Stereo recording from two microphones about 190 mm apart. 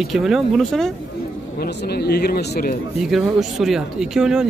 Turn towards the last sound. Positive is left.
turn(degrees=-5)  # may be behind; listen again after turning